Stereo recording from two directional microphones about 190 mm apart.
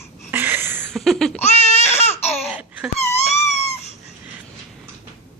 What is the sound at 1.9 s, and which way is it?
Baby cry, 35° left (ahead or behind).